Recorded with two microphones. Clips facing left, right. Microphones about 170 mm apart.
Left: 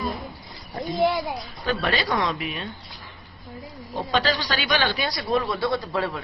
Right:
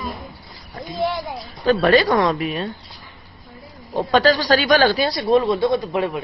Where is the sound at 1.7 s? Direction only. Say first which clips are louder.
Right 10 dB; 45° right (ahead or behind).